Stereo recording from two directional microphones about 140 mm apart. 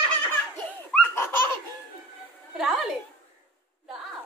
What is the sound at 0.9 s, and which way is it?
Laughter, 15° left (ahead or behind).